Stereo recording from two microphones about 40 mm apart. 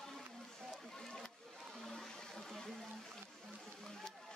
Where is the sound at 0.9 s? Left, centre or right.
Centre.